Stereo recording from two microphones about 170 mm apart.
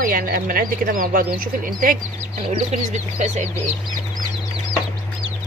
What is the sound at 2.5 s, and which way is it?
Speech, 45° right (ahead or behind).